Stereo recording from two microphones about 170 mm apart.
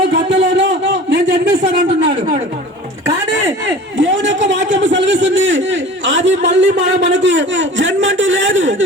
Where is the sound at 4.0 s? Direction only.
90° right.